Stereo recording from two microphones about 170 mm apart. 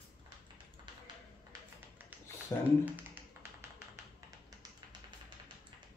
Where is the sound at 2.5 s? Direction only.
15° left (ahead or behind).